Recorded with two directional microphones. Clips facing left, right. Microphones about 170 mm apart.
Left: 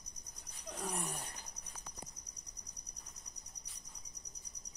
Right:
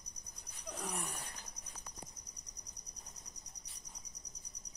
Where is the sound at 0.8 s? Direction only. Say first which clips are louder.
Left 2 dB; centre (ahead or behind).